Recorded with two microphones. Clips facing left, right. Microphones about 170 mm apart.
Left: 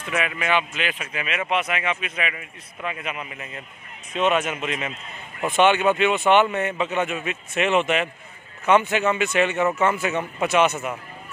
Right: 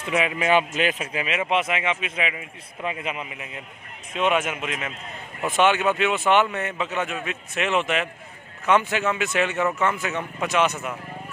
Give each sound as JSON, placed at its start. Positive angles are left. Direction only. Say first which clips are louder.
{"t": 0.0, "sound": "a man's voice", "louder": "right 3 dB", "side_deg": -25}
{"t": 0.5, "sound": "a man's voice", "louder": "right 5 dB", "side_deg": -40}
{"t": 1.0, "sound": "a man's voice", "louder": "right 2 dB", "side_deg": -25}
{"t": 3.3, "sound": "a man's voice", "louder": "even", "side_deg": -10}